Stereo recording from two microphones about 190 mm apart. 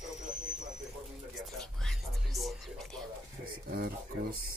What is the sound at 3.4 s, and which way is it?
Speech, 50° right (ahead or behind).